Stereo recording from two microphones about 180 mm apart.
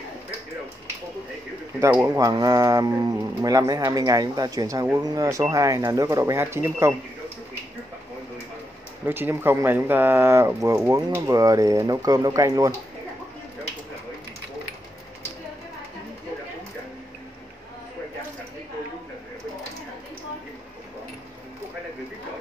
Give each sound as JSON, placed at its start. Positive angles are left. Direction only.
{"t": 1.8, "sound": "speech", "side_deg": -10}
{"t": 9.0, "sound": "speech", "side_deg": -10}